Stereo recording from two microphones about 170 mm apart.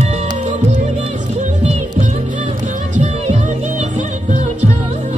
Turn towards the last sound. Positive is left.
turn(degrees=-45)  # may be behind; listen again after turning